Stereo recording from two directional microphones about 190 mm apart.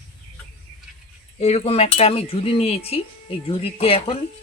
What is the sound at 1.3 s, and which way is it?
Cutlery, 35° left (ahead or behind).